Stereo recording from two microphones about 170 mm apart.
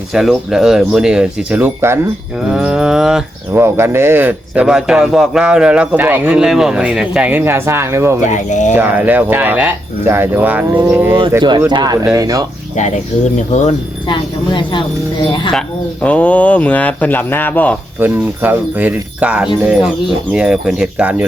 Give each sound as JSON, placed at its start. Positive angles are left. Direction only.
{"t": 0.1, "sound": "speech", "side_deg": 0}
{"t": 3.6, "sound": "a man's voice", "side_deg": -15}
{"t": 8.2, "sound": "speech", "side_deg": 45}
{"t": 8.7, "sound": "a man's voice", "side_deg": -10}
{"t": 14.1, "sound": "speech", "side_deg": 30}
{"t": 16.0, "sound": "speech", "side_deg": 10}
{"t": 18.0, "sound": "a man's voice", "side_deg": -10}